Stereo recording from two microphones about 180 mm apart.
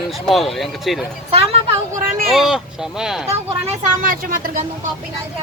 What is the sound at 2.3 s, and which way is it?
Speech, centre (ahead or behind).